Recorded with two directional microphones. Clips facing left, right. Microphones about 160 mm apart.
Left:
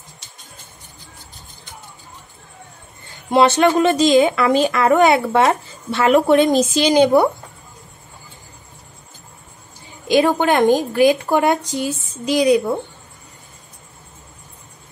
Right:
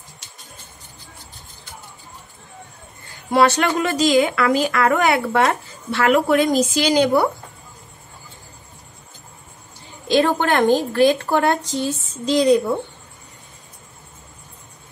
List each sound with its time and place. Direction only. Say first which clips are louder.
3.3 s speech: left 3 dB; 20° left (ahead or behind)
10.0 s a woman's voice: left 2 dB; 15° left (ahead or behind)